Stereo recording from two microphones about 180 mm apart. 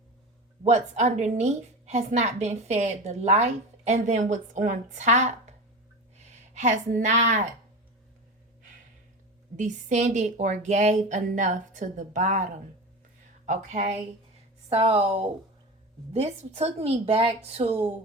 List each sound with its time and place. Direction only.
0.6 s a woman's voice: 40° right (ahead or behind)
9.6 s a woman's voice: 45° right (ahead or behind)
16.6 s a woman's voice: 35° right (ahead or behind)